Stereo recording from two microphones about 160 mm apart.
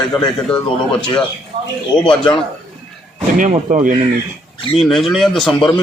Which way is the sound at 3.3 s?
55° right (ahead or behind).